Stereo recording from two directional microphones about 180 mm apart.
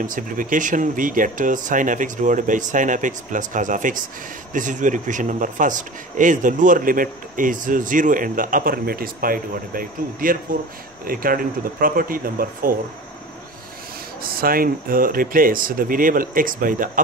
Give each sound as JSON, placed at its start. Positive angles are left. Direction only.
{"t": 0.0, "sound": "a man's voice", "side_deg": -50}
{"t": 14.3, "sound": "a man's voice", "side_deg": -55}